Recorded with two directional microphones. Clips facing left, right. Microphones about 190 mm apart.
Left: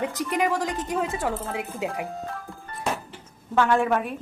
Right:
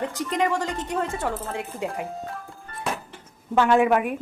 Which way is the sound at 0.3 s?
5° left (ahead or behind).